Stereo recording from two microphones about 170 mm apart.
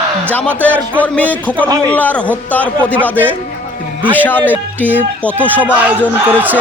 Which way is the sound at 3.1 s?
10° right (ahead or behind).